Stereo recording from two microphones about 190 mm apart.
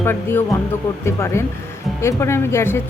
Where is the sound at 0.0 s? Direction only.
10° left (ahead or behind).